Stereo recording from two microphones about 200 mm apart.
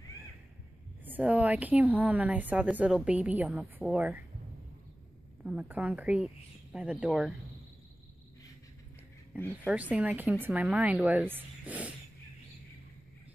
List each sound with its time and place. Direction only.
1.0 s a woman's voice: 5° right (ahead or behind)
5.4 s speech: 10° right (ahead or behind)
9.7 s a woman's voice: 5° right (ahead or behind)